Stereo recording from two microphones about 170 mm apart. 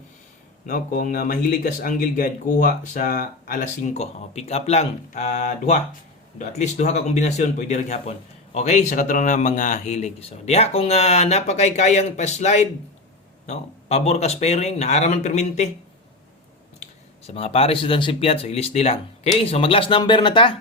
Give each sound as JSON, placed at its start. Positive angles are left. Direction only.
{"t": 0.7, "sound": "speech", "side_deg": 50}
{"t": 16.8, "sound": "speech", "side_deg": 35}